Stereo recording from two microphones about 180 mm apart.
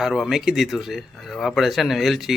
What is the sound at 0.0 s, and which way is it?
Speech, centre (ahead or behind).